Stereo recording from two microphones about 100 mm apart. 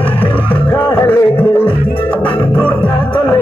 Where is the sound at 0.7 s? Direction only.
20° left (ahead or behind).